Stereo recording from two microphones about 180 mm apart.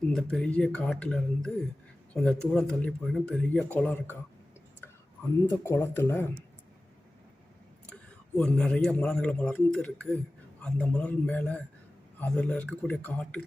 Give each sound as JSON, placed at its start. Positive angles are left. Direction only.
{"t": 0.1, "sound": "a man's voice", "side_deg": 5}
{"t": 5.5, "sound": "a man's voice", "side_deg": 15}
{"t": 8.4, "sound": "a man's voice", "side_deg": 5}